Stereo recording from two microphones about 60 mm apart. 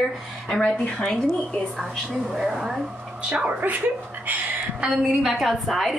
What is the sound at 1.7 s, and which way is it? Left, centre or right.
A woman's voice, centre.